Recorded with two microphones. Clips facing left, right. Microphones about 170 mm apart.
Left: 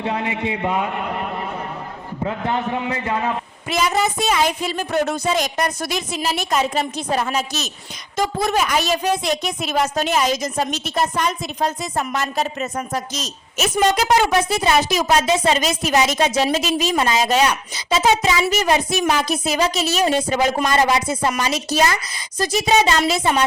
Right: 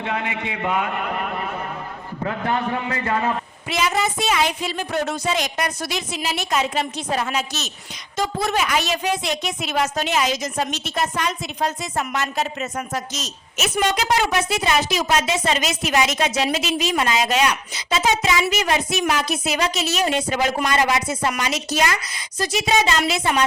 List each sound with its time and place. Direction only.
0.0 s a child's voice: 30° left (ahead or behind)
2.2 s a man's voice: 15° left (ahead or behind)
3.7 s a woman's voice: 45° left (ahead or behind)